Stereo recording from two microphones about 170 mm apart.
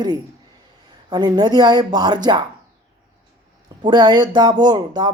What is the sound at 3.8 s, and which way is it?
Speech, 25° right (ahead or behind).